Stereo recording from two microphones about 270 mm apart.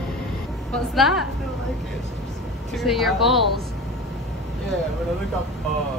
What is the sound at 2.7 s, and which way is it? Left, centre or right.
Speech, centre.